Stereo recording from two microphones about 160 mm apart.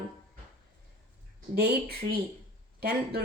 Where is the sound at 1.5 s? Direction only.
85° right.